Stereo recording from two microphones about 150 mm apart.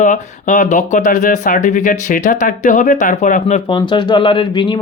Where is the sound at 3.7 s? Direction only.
30° left (ahead or behind).